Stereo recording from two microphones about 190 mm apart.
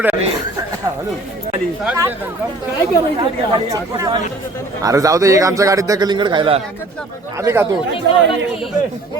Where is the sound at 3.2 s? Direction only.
20° right (ahead or behind).